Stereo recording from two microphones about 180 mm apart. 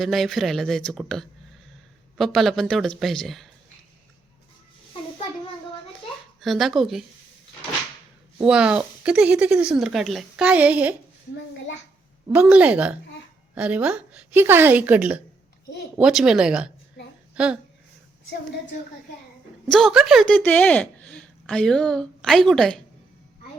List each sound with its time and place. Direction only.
0.0 s speech: centre (ahead or behind)
6.4 s speech: centre (ahead or behind)
8.4 s speech: 5° right (ahead or behind)
12.3 s a woman's voice: 5° right (ahead or behind)
17.0 s a sound: 70° left (ahead or behind)
17.3 s speech: 5° right (ahead or behind)
19.7 s a woman's voice: centre (ahead or behind)